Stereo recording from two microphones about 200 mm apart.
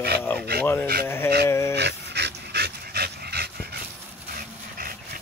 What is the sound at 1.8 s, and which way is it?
Dog, 55° right (ahead or behind).